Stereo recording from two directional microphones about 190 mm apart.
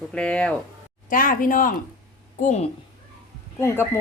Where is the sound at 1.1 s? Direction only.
45° left (ahead or behind).